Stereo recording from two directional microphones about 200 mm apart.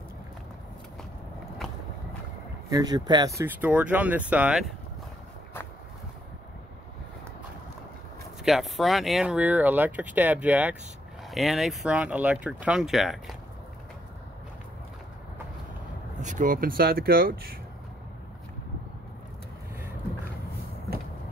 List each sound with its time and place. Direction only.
1.6 s biting: centre (ahead or behind)
2.7 s speech: 20° right (ahead or behind); by 4.7 s 5° right (ahead or behind)
8.5 s speech: centre (ahead or behind)
16.2 s speech: 40° right (ahead or behind)